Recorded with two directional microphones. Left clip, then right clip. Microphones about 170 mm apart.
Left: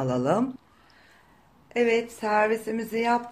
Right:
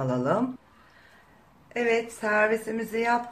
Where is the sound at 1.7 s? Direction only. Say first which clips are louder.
Left 2 dB; 45° left (ahead or behind).